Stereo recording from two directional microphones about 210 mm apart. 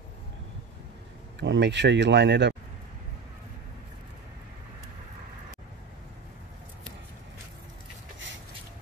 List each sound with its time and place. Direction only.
1.4 s speech: 60° right (ahead or behind)